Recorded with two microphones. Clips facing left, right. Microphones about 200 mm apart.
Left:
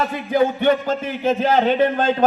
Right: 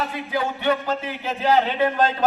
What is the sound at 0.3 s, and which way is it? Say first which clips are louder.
A man's voice: left 7 dB; 45° left (ahead or behind).